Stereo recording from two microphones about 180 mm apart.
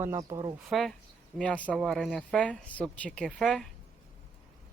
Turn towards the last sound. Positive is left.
turn(degrees=0)  # may be behind; listen again after turning